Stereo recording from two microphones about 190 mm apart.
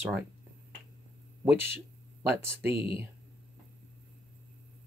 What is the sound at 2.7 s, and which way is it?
Speech, 30° left (ahead or behind).